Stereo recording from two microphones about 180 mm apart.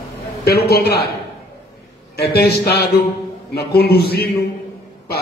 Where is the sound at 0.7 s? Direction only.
60° left (ahead or behind).